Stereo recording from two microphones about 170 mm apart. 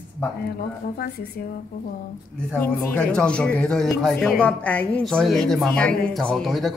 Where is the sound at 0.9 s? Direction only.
70° left (ahead or behind).